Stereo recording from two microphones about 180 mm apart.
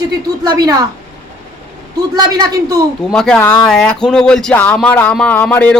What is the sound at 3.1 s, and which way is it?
Speech, 5° left (ahead or behind).